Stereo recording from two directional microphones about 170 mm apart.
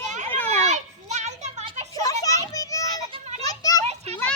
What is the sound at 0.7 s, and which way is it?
Children playing, 45° right (ahead or behind).